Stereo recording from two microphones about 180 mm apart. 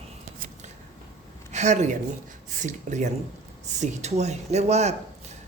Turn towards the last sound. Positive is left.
turn(degrees=-40)  # may be behind; listen again after turning